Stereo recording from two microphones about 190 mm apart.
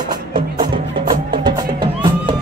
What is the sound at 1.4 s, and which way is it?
Music, 25° right (ahead or behind).